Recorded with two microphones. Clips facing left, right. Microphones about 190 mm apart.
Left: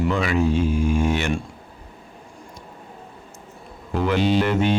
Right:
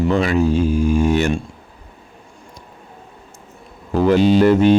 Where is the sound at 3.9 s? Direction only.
40° right (ahead or behind).